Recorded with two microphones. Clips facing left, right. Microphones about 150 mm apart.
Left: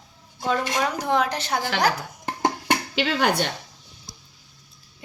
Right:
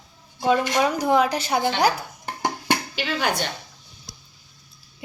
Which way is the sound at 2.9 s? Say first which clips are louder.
Left 3 dB; 60° left (ahead or behind).